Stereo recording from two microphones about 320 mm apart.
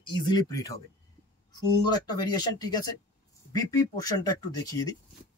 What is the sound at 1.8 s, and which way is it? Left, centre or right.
Speech, centre.